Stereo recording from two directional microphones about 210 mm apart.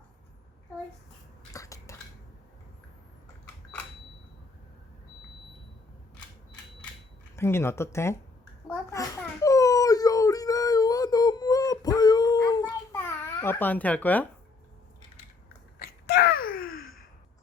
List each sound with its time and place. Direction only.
1.5 s cutlery: 15° left (ahead or behind)
7.3 s speech: 10° left (ahead or behind)
8.9 s dog: 15° left (ahead or behind)
15.8 s a sound: 50° left (ahead or behind)
16.7 s sigh: 75° left (ahead or behind)